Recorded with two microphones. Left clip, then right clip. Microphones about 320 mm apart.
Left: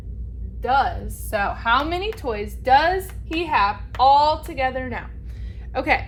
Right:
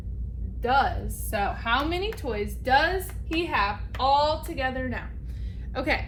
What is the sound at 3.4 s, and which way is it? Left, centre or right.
A woman's voice, centre.